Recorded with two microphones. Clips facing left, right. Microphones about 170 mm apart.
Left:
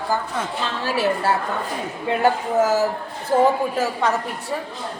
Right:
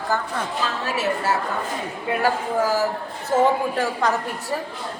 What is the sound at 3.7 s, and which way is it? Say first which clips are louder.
Speech: left 1 dB; centre (ahead or behind).